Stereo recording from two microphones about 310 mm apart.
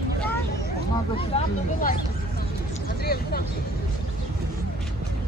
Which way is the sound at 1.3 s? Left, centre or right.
Left.